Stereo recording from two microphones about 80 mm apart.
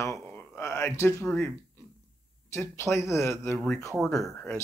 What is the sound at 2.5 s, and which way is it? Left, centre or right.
Speech, left.